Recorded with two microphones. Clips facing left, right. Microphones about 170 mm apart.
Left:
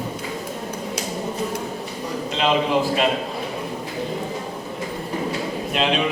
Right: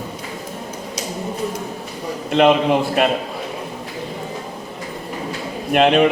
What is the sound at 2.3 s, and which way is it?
Speech, 55° right (ahead or behind).